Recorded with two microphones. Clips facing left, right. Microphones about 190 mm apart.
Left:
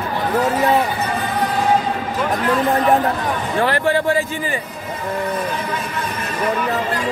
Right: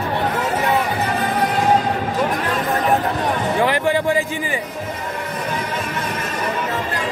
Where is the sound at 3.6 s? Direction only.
15° right (ahead or behind).